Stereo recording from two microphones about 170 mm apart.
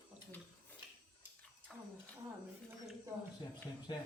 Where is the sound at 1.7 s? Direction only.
Centre (ahead or behind).